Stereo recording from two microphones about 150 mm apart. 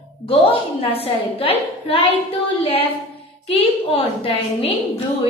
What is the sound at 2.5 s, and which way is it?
A woman's voice, 40° left (ahead or behind).